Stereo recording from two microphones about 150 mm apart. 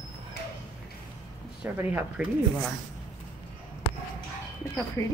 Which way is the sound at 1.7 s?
15° right (ahead or behind).